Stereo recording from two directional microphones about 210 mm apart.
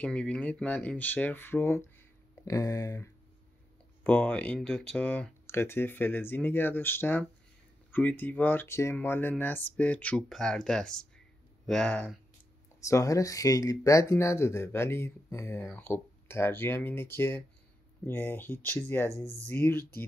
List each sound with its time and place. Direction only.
0.0 s speech: 5° left (ahead or behind)
12.8 s speech: 15° left (ahead or behind)